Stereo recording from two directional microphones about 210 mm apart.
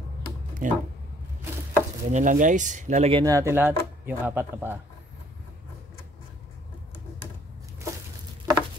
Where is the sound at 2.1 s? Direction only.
40° right (ahead or behind); by 4.7 s 10° right (ahead or behind).